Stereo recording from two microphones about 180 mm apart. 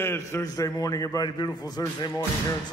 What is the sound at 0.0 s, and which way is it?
A man's voice, 15° left (ahead or behind).